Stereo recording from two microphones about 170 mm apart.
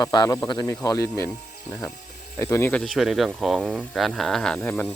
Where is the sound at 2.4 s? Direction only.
15° left (ahead or behind).